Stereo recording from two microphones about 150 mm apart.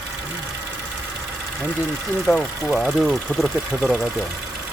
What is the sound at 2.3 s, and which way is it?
Speech, 5° left (ahead or behind).